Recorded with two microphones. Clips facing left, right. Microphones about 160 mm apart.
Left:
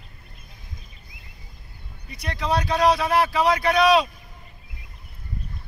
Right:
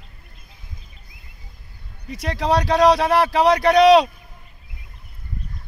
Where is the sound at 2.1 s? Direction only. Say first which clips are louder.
Right 5 dB; 90° right; by 4.1 s 75° right (ahead or behind).